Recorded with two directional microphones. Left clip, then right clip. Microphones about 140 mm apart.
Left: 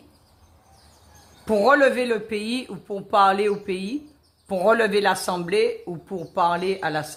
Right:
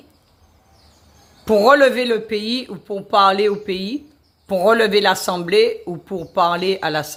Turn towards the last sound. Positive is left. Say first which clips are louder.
# right 5 dB
turn(degrees=-35)  # may be behind; listen again after turning